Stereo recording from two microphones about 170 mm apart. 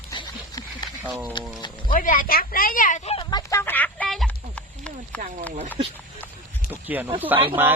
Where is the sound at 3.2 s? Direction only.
25° left (ahead or behind).